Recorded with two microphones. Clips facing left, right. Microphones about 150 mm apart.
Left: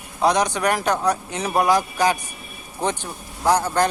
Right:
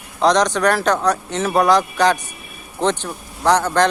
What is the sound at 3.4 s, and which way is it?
Speech, 70° right (ahead or behind).